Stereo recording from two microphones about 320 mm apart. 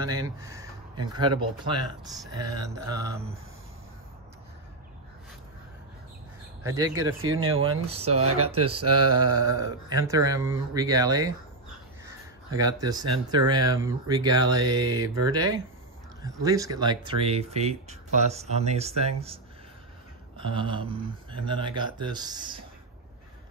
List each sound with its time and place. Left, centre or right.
0.0 s speech: centre
6.6 s speech: centre
7.2 s speech: right
7.8 s speech: centre
8.5 s speech: right
9.1 s speech: centre
12.5 s speech: centre